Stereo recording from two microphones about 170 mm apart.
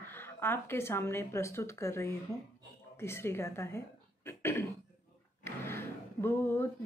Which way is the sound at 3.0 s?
15° left (ahead or behind).